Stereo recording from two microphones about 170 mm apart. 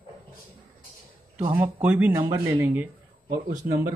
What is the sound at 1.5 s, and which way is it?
Speech, 10° right (ahead or behind).